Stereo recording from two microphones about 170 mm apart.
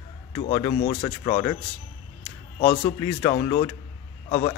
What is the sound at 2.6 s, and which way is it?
Speech, 45° left (ahead or behind).